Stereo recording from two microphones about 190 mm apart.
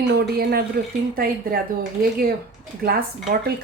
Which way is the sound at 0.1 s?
55° right (ahead or behind).